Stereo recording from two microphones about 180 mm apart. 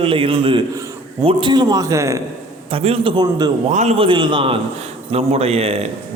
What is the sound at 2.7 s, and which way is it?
Speech, 30° right (ahead or behind).